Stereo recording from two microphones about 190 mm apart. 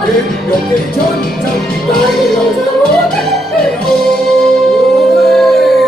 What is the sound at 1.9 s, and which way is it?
Music, centre (ahead or behind).